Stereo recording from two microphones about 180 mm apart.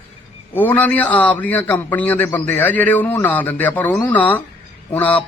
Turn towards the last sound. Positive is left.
turn(degrees=10)  # may be behind; listen again after turning